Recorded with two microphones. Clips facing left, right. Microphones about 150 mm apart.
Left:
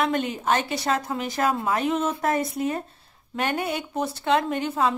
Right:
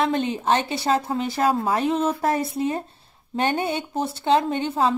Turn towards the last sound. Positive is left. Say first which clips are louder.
# right 2 dB
turn(degrees=-30)  # may be behind; listen again after turning